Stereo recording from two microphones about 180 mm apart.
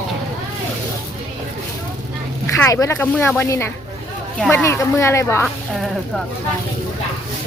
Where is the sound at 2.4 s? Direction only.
15° left (ahead or behind).